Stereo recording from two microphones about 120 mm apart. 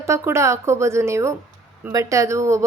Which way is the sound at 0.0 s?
25° right (ahead or behind).